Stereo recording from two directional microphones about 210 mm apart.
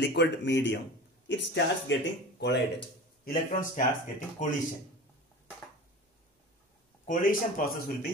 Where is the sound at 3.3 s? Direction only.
40° left (ahead or behind).